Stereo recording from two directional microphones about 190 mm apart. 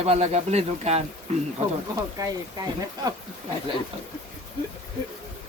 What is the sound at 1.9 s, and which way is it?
Speech, 20° right (ahead or behind).